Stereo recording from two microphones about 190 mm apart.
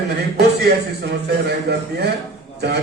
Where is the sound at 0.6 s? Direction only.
60° right (ahead or behind).